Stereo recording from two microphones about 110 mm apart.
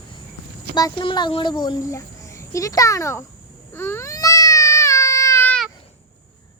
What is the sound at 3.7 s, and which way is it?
Baby cry, 20° left (ahead or behind).